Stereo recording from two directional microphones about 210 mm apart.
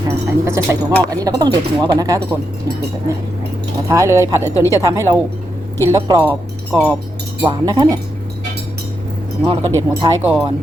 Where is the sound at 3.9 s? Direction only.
15° right (ahead or behind).